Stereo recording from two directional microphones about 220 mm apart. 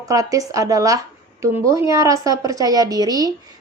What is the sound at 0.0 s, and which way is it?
Speech, 15° right (ahead or behind).